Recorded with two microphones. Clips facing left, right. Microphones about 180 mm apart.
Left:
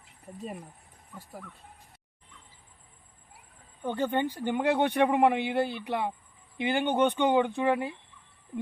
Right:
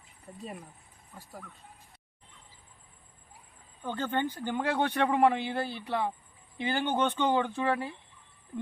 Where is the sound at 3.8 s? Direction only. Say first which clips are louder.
Left 3 dB; 15° left (ahead or behind).